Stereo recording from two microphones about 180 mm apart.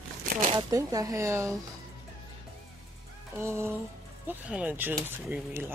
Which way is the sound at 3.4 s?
15° right (ahead or behind).